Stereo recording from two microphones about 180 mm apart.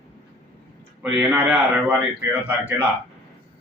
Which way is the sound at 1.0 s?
5° right (ahead or behind).